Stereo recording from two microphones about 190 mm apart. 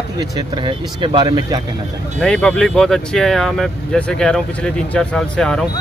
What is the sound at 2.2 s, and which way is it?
Speech, 5° left (ahead or behind).